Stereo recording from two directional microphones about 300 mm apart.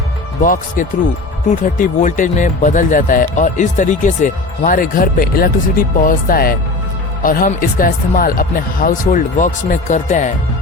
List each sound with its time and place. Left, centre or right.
0.4 s speech: left